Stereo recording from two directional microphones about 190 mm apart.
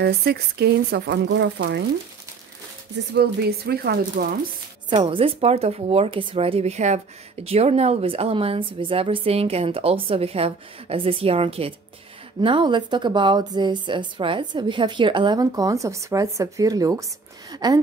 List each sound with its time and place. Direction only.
0.0 s speech: 55° right (ahead or behind)
3.1 s speech: 55° right (ahead or behind)
4.8 s a woman's voice: 25° right (ahead or behind)